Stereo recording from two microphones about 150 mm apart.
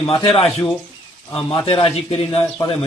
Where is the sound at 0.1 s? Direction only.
40° left (ahead or behind).